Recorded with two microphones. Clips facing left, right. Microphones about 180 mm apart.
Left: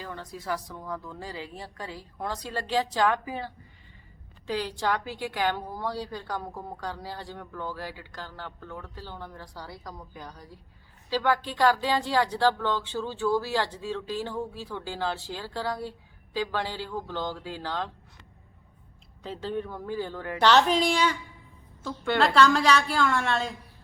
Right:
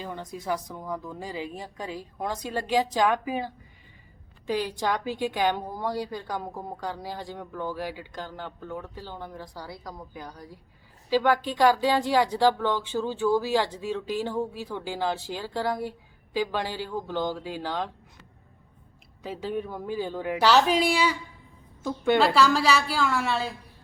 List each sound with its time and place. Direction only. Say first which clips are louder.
0.0 s speech: right 3 dB; 20° right (ahead or behind)
19.2 s speech: right 1 dB; 10° right (ahead or behind)
22.2 s a woman's voice: left 3 dB; 5° right (ahead or behind)